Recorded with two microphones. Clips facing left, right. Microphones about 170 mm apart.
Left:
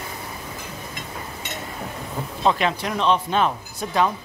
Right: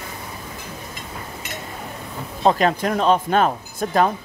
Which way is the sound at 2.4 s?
40° right (ahead or behind).